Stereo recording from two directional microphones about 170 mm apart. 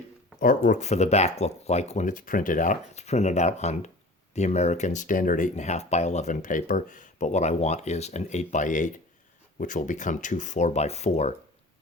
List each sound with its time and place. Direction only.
0.3 s speech: 55° left (ahead or behind)